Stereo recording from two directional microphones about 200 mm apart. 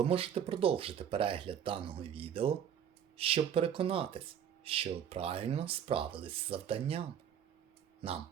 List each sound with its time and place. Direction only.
0.0 s speech: 30° right (ahead or behind)